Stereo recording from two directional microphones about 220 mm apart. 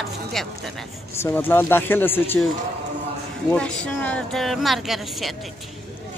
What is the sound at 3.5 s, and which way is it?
A woman's voice, 5° left (ahead or behind).